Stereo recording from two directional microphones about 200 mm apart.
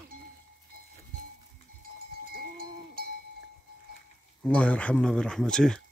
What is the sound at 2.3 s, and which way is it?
Cowbell, 50° right (ahead or behind).